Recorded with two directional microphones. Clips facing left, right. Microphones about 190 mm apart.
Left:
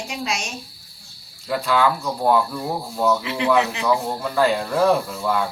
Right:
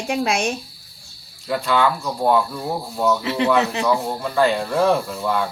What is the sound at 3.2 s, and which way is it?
Speech, 35° right (ahead or behind).